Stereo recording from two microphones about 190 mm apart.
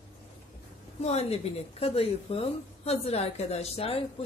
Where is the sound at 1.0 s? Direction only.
35° left (ahead or behind).